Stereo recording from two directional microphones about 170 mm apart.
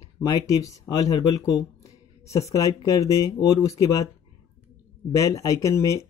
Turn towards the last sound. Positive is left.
turn(degrees=20)  # may be behind; listen again after turning